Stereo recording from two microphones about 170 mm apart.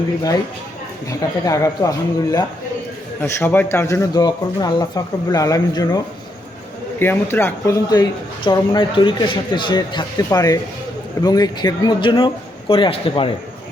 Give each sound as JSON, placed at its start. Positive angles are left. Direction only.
{"t": 1.0, "sound": "speech", "side_deg": 20}
{"t": 7.0, "sound": "speech", "side_deg": 10}